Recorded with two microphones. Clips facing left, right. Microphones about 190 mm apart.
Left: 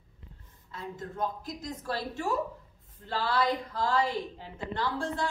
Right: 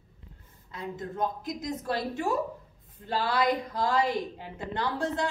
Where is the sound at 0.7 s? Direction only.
20° right (ahead or behind).